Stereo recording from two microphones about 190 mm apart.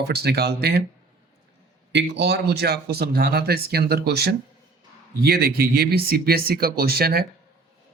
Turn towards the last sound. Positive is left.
turn(degrees=-55)  # may be behind; listen again after turning